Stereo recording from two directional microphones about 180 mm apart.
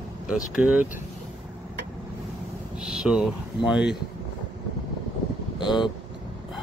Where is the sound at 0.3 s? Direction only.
5° right (ahead or behind).